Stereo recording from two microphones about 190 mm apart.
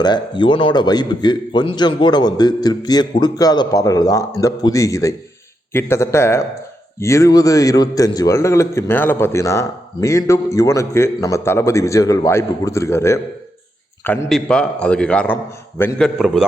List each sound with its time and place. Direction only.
0.0 s a man's voice: 25° left (ahead or behind); by 16.5 s centre (ahead or behind)